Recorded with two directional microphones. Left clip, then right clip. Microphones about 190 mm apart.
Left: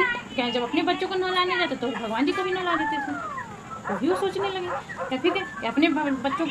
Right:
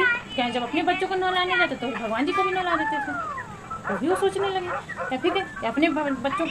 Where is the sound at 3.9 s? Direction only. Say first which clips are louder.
Right 1 dB; 35° right (ahead or behind).